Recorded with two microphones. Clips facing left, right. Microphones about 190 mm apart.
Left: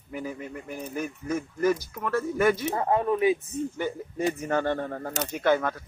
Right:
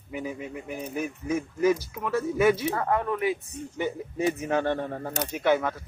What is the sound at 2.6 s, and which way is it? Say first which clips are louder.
Speech: left 2 dB; 20° left (ahead or behind).